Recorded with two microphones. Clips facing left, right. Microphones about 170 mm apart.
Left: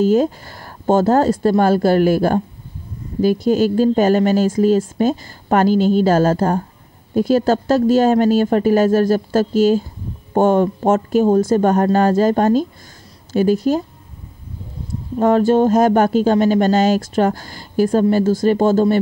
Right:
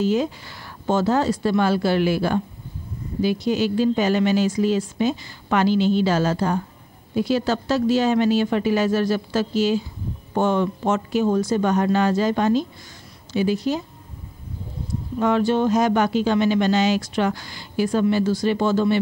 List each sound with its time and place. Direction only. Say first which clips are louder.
0.0 s speech: left 6 dB; 45° left (ahead or behind)
15.1 s speech: left 6 dB; 45° left (ahead or behind)